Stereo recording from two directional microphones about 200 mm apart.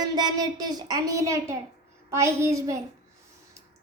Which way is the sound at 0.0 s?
20° right (ahead or behind).